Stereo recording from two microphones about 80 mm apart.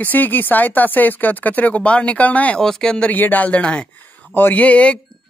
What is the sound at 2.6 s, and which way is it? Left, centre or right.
Speech, centre.